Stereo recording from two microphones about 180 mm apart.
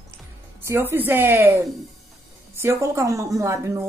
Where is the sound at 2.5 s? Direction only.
15° right (ahead or behind).